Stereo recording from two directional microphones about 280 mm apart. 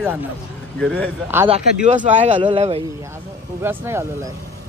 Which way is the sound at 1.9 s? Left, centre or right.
Right.